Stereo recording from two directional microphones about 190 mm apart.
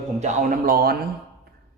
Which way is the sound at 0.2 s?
40° right (ahead or behind).